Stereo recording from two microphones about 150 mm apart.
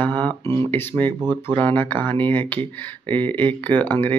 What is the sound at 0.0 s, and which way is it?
Speech, 10° left (ahead or behind).